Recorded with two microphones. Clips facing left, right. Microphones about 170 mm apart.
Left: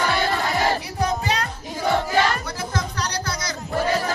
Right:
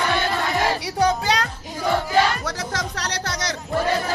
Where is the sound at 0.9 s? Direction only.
90° right; by 3.5 s 75° right (ahead or behind).